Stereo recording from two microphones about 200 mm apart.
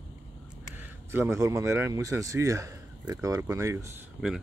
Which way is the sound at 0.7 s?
10° right (ahead or behind).